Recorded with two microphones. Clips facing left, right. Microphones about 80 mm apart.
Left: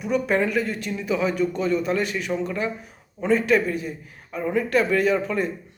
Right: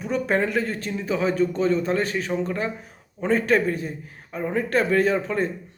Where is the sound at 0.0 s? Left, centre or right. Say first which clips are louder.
Left 1 dB; right.